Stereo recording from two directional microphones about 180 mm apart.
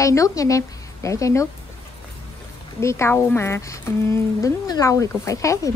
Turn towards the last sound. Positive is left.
turn(degrees=15)  # may be behind; listen again after turning